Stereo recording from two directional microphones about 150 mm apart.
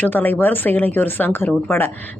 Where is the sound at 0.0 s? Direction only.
10° left (ahead or behind).